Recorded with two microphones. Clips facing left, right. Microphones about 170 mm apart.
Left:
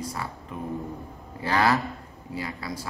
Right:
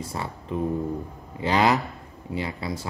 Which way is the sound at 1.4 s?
20° right (ahead or behind).